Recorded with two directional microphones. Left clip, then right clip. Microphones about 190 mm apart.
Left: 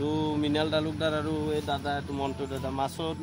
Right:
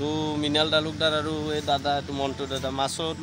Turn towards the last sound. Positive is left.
turn(degrees=-10)  # may be behind; listen again after turning